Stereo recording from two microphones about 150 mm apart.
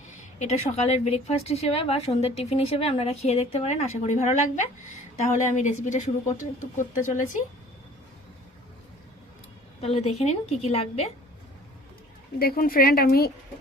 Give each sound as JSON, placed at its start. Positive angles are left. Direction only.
{"t": 0.3, "sound": "a woman's voice", "side_deg": 50}
{"t": 9.8, "sound": "a woman's voice", "side_deg": 45}
{"t": 12.4, "sound": "a woman's voice", "side_deg": 80}